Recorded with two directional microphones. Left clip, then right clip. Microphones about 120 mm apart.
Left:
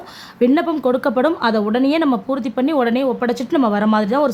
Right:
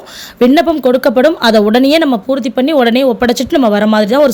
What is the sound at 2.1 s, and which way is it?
Speech, 10° right (ahead or behind).